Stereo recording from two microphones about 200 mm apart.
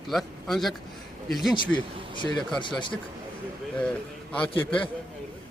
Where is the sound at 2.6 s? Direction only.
25° left (ahead or behind).